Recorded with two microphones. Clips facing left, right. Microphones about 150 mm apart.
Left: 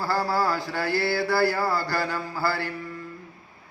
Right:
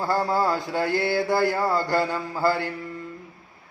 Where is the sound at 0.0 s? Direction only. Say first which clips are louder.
Right 2 dB; 20° right (ahead or behind).